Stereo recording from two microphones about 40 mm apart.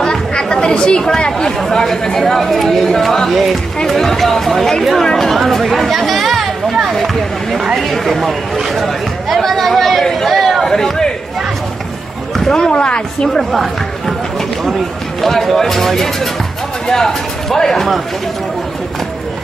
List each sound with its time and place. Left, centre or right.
0.0 s chatter: centre
1.6 s speech: centre
7.5 s speech: centre
8.8 s chatter: centre
12.4 s speech: centre
12.7 s a woman's voice: left
13.3 s speech: centre
15.2 s speech: centre